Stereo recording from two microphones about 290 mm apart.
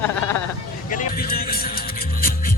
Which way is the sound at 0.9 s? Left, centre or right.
Left.